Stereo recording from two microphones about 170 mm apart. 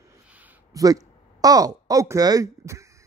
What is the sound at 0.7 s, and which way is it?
Speech, 20° right (ahead or behind).